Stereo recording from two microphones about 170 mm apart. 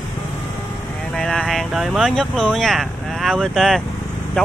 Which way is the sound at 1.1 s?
5° left (ahead or behind).